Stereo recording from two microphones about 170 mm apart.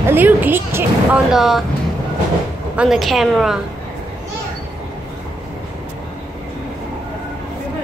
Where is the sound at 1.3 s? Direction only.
Centre (ahead or behind).